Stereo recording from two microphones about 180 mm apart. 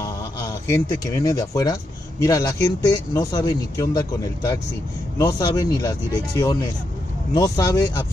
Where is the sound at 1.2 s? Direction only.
20° left (ahead or behind).